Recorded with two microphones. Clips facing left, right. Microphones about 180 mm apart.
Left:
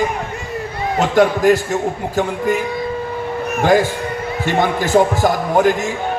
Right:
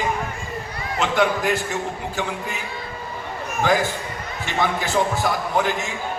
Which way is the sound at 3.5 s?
65° left (ahead or behind).